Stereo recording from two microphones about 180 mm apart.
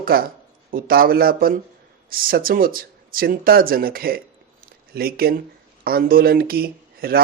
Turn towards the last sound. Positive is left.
turn(degrees=-55)  # may be behind; listen again after turning